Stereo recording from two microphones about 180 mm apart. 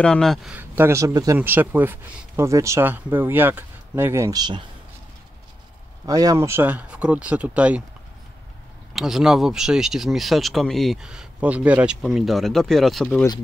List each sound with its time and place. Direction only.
0.0 s speech: 5° left (ahead or behind); by 4.6 s 25° right (ahead or behind)
6.0 s speech: 20° right (ahead or behind)
8.9 s speech: centre (ahead or behind)